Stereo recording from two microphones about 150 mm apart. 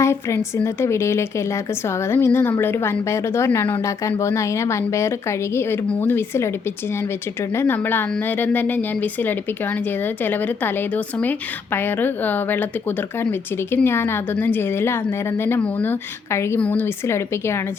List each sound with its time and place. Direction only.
0.0 s a woman's voice: 20° left (ahead or behind)
7.5 s a woman's voice: 15° left (ahead or behind)